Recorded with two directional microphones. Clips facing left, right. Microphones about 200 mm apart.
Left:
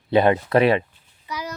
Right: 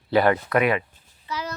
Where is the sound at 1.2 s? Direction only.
15° left (ahead or behind).